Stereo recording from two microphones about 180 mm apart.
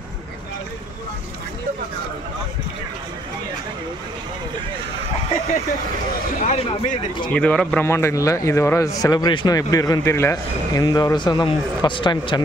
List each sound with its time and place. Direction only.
6.4 s speech: 35° left (ahead or behind)
7.3 s a man's voice: 5° left (ahead or behind); by 12.4 s 25° left (ahead or behind)